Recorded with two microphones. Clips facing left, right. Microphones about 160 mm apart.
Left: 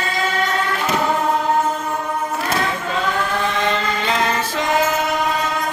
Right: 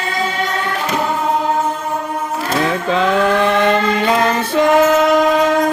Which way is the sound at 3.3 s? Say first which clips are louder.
Right 7 dB; 65° right (ahead or behind).